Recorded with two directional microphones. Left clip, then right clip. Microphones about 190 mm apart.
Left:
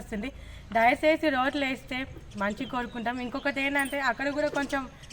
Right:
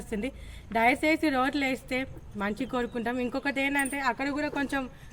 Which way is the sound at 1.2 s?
30° right (ahead or behind).